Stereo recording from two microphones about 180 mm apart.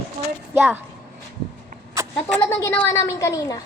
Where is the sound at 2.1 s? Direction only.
15° left (ahead or behind).